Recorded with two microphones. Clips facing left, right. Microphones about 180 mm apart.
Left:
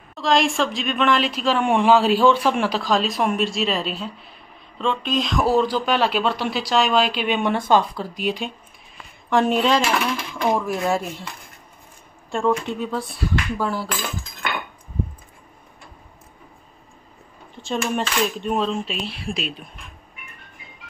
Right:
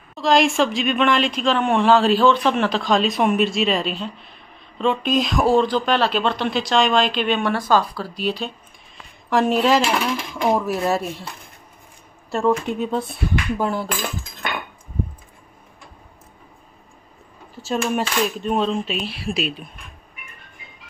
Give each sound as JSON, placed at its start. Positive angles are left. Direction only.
{"t": 0.1, "sound": "a woman's voice", "side_deg": 0}
{"t": 5.0, "sound": "a woman's voice", "side_deg": -10}
{"t": 9.3, "sound": "a woman's voice", "side_deg": 0}
{"t": 12.3, "sound": "speech", "side_deg": -5}
{"t": 12.6, "sound": "speech", "side_deg": -20}
{"t": 17.6, "sound": "a woman's voice", "side_deg": -5}